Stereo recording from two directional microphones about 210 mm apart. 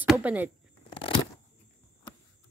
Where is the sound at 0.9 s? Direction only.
25° left (ahead or behind).